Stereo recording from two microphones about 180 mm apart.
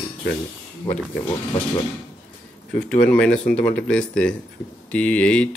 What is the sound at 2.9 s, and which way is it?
Speech, 5° left (ahead or behind).